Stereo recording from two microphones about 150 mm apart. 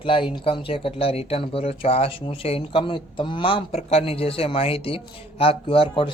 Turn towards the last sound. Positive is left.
turn(degrees=35)  # may be behind; listen again after turning